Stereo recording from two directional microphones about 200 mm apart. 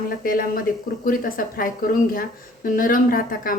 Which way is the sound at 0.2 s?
45° left (ahead or behind).